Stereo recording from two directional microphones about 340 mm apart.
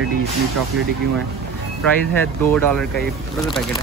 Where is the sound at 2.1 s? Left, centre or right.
Centre.